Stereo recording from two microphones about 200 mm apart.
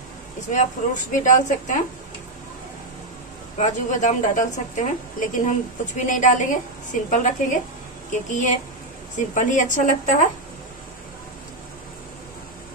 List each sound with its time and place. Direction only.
0.5 s a woman's voice: 40° left (ahead or behind)
3.5 s a woman's voice: 35° left (ahead or behind)